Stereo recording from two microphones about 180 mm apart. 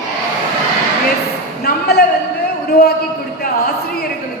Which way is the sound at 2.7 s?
60° left (ahead or behind).